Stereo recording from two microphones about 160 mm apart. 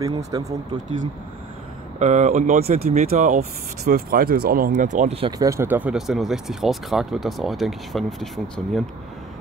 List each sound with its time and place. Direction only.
0.3 s speech: 30° right (ahead or behind)
2.0 s speech: 45° right (ahead or behind)
3.8 s speech: 70° right (ahead or behind); by 5.3 s 40° right (ahead or behind)
5.4 s speech: 15° right (ahead or behind); by 8.8 s centre (ahead or behind)